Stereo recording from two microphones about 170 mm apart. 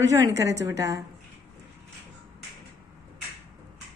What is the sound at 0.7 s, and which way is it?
Speech, 20° right (ahead or behind).